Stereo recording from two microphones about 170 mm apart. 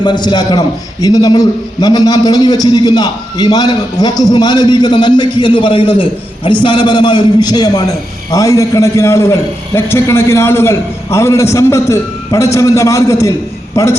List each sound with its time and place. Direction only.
0.0 s a man's voice: 25° left (ahead or behind)